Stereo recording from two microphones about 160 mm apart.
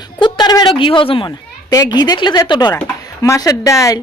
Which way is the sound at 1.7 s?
25° left (ahead or behind).